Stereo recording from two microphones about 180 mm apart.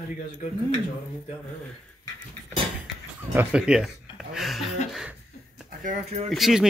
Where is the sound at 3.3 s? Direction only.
5° right (ahead or behind).